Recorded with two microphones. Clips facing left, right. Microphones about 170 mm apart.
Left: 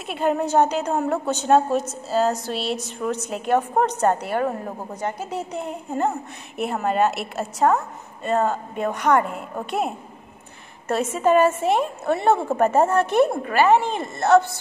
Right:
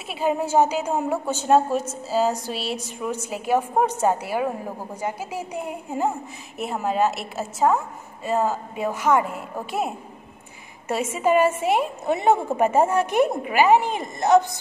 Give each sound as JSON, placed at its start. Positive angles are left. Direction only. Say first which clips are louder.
{"t": 0.1, "sound": "a woman's voice", "louder": "left 1 dB", "side_deg": -5}